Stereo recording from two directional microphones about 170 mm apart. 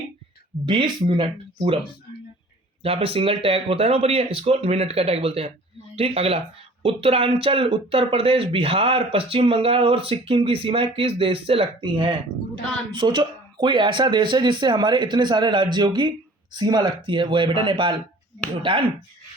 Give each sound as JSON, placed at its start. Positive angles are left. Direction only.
{"t": 0.6, "sound": "speech", "side_deg": -30}
{"t": 2.8, "sound": "speech", "side_deg": -35}